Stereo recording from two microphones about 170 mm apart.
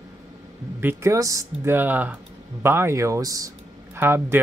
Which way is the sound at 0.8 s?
15° right (ahead or behind).